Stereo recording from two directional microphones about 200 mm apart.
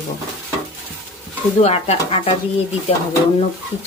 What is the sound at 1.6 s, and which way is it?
Speech, 30° left (ahead or behind).